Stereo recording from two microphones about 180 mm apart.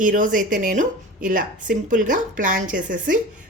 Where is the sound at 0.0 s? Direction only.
50° right (ahead or behind).